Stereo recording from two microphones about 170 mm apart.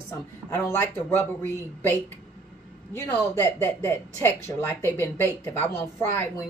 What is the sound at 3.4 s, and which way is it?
A woman's voice, 15° left (ahead or behind).